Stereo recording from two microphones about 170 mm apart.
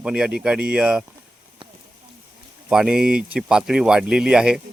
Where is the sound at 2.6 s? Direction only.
5° right (ahead or behind).